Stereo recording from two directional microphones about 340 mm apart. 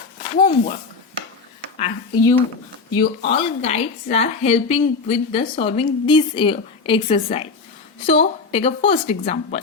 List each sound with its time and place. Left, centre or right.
0.3 s speech: left
1.8 s a woman's voice: centre